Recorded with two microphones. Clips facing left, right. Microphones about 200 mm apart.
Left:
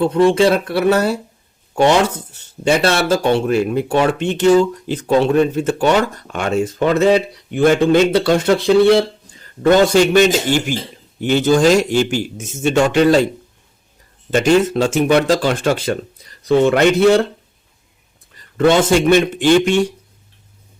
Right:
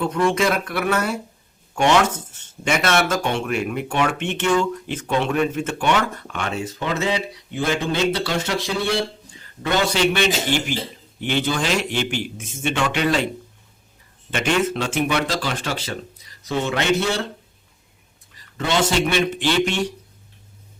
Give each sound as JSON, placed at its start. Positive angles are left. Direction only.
{"t": 0.0, "sound": "speech", "side_deg": 30}
{"t": 9.6, "sound": "a man's voice", "side_deg": 50}
{"t": 14.3, "sound": "speech", "side_deg": 40}
{"t": 18.5, "sound": "a man's voice", "side_deg": 55}